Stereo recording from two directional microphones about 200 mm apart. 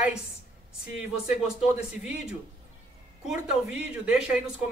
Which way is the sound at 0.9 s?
5° right (ahead or behind).